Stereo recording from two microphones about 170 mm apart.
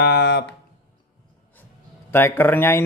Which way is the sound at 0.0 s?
80° left.